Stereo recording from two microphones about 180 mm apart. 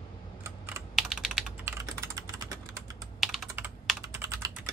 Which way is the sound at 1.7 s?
20° right (ahead or behind).